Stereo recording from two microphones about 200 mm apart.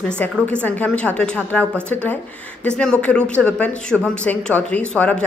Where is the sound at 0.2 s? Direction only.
10° left (ahead or behind).